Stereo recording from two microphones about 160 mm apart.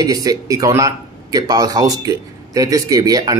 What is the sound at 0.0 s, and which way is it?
Speech, 25° right (ahead or behind).